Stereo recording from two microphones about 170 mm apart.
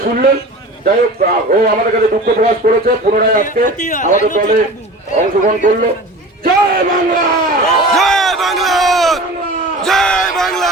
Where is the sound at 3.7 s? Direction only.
45° left (ahead or behind).